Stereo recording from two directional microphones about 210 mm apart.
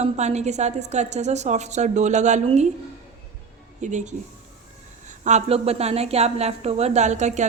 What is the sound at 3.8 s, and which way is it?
A woman's voice, 35° right (ahead or behind).